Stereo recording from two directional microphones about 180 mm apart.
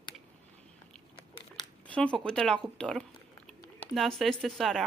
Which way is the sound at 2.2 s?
5° left (ahead or behind).